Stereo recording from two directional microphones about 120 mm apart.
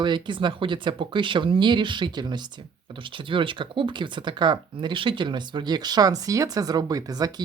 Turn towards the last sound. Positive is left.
turn(degrees=-30)  # may be behind; listen again after turning